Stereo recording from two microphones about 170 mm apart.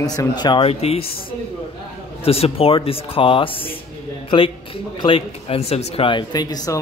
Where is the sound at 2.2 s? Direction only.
35° left (ahead or behind).